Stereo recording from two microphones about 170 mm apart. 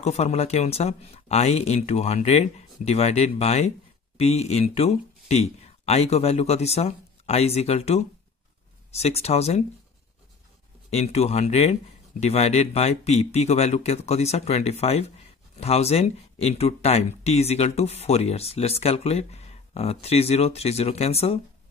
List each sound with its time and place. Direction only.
0.0 s speech: 40° left (ahead or behind)
10.9 s speech: 40° left (ahead or behind)